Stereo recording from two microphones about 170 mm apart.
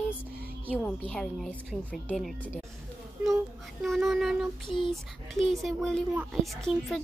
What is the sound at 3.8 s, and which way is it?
Speech, centre (ahead or behind).